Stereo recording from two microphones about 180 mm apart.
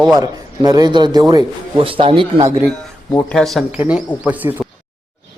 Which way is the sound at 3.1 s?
5° left (ahead or behind).